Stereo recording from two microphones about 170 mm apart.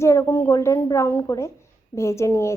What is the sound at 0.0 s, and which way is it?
Speech, 15° left (ahead or behind).